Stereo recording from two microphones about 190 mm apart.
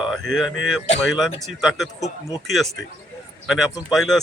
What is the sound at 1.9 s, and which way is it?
Speech, 20° left (ahead or behind).